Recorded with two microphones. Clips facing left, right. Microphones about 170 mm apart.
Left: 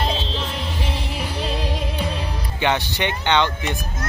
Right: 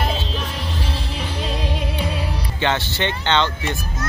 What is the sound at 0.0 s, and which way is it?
Music, 5° right (ahead or behind).